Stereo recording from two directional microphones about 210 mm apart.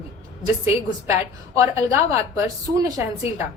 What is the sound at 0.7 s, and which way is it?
A woman's voice, 15° right (ahead or behind).